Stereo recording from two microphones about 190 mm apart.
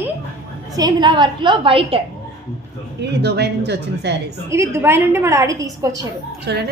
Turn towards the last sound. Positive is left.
turn(degrees=-65)  # may be behind; listen again after turning